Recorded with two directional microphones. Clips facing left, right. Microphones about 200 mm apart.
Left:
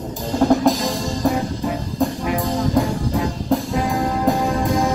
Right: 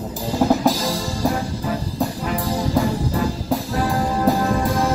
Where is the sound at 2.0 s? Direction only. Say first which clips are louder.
Left 6 dB; centre (ahead or behind).